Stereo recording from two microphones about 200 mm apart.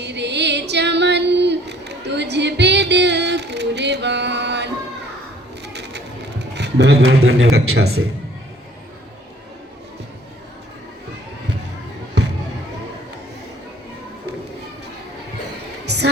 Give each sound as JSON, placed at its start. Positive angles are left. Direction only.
{"t": 0.0, "sound": "female singing", "side_deg": -60}
{"t": 5.6, "sound": "a sound", "side_deg": -60}
{"t": 6.5, "sound": "a man's voice", "side_deg": -60}
{"t": 7.2, "sound": "speech", "side_deg": -90}